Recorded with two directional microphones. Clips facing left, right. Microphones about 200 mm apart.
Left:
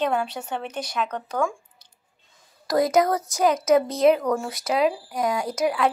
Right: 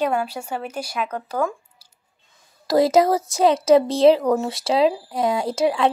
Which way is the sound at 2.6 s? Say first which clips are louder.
Right 4 dB; 25° right (ahead or behind).